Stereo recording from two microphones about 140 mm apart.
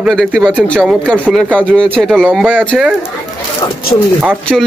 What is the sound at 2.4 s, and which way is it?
Speech, 10° right (ahead or behind).